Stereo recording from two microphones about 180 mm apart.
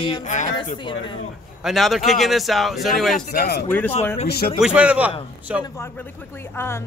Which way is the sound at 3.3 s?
65° left (ahead or behind).